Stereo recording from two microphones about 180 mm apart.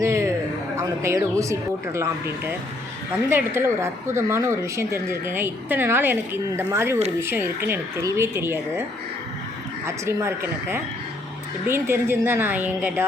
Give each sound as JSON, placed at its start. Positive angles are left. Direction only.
{"t": 0.0, "sound": "a sound", "side_deg": -15}
{"t": 0.8, "sound": "speech", "side_deg": -15}
{"t": 9.8, "sound": "speech", "side_deg": -15}